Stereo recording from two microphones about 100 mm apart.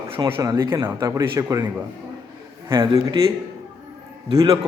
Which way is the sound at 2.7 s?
35° right (ahead or behind).